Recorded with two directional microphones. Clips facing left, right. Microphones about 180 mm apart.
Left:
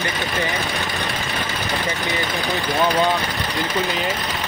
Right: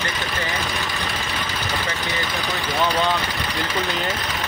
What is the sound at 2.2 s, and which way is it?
Speech, 15° left (ahead or behind).